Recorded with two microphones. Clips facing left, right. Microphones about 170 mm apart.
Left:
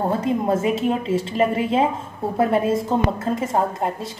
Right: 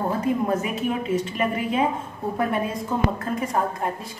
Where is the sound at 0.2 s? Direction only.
25° left (ahead or behind).